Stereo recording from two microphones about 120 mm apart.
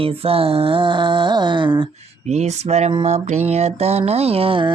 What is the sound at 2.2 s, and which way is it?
Speech, 70° right (ahead or behind).